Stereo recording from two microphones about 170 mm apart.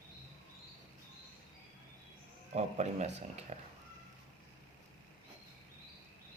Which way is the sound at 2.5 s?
40° right (ahead or behind).